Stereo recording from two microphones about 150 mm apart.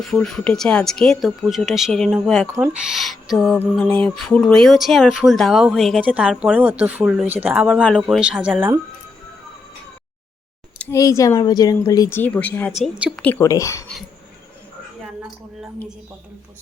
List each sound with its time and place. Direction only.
0.0 s speech: 5° left (ahead or behind)
2.5 s speech: 10° right (ahead or behind)
10.9 s speech: 20° left (ahead or behind)
12.8 s a woman's voice: 5° right (ahead or behind)
13.2 s speech: 20° left (ahead or behind)